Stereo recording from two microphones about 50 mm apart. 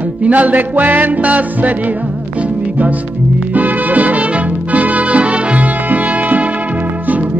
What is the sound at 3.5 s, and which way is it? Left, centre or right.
Music, right.